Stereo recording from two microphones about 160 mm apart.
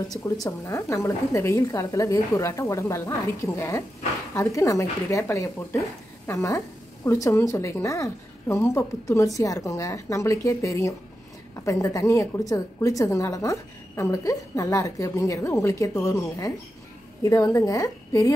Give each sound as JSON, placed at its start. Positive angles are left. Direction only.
{"t": 0.1, "sound": "a woman's voice", "side_deg": 20}